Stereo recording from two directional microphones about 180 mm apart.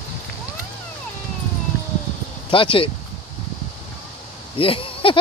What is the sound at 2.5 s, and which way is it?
Speech, 30° left (ahead or behind).